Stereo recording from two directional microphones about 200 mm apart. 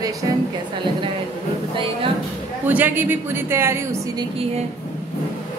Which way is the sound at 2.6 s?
10° right (ahead or behind).